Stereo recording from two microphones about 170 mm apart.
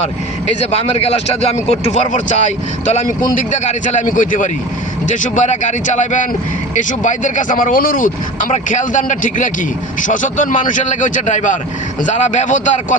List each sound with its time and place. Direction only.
0.0 s speech: 40° left (ahead or behind)